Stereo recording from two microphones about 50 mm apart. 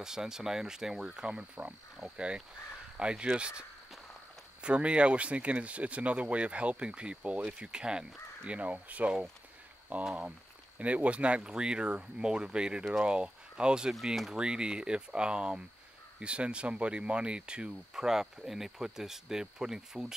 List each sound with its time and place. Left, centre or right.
0.0 s speech: centre
4.6 s speech: right
8.5 s speech: right
9.9 s speech: right
10.8 s speech: right
13.9 s speech: centre
14.3 s speech: centre
18.0 s speech: centre